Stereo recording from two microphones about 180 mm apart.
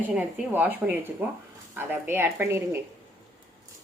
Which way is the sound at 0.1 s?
10° right (ahead or behind).